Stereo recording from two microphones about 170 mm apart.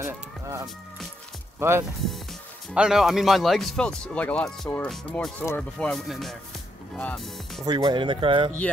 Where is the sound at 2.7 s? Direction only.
5° right (ahead or behind).